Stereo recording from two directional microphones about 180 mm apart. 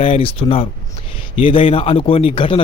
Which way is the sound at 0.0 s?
30° left (ahead or behind).